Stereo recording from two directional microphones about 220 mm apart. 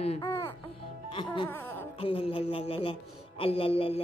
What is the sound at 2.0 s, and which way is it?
A man's voice, 25° left (ahead or behind).